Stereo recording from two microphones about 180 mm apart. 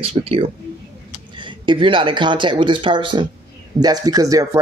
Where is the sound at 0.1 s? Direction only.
35° right (ahead or behind).